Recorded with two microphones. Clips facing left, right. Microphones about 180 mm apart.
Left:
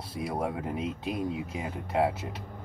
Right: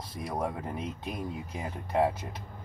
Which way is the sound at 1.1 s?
85° left.